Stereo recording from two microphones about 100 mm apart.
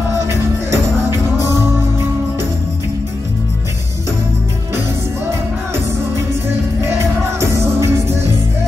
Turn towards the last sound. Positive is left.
turn(degrees=-30)  # may be behind; listen again after turning